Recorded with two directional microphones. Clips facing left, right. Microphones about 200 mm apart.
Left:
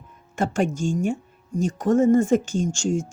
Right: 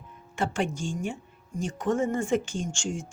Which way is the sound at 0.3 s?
45° left (ahead or behind).